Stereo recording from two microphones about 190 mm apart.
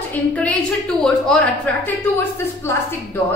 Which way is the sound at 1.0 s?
5° left (ahead or behind).